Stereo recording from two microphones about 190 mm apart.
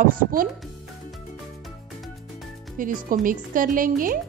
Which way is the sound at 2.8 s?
45° right (ahead or behind).